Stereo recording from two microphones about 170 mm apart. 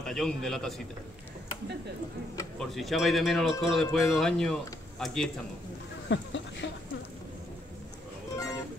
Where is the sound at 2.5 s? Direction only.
Centre (ahead or behind).